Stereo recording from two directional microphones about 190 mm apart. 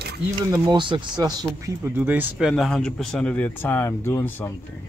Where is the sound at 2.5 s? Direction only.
5° left (ahead or behind).